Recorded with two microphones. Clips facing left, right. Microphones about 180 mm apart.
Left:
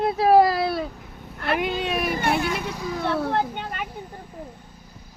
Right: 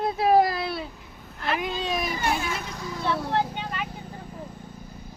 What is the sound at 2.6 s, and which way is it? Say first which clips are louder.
Vehicle: left 6 dB; 10° left (ahead or behind).